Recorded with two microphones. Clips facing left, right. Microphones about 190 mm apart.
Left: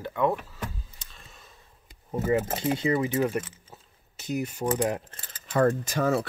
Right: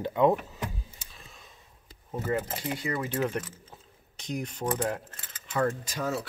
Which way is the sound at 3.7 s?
5° left (ahead or behind).